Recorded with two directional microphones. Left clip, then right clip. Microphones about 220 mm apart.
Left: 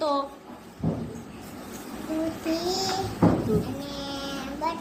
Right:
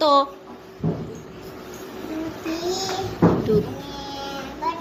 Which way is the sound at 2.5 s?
35° left (ahead or behind).